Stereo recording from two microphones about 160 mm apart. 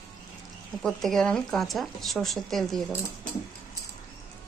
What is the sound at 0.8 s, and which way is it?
Speech, centre (ahead or behind).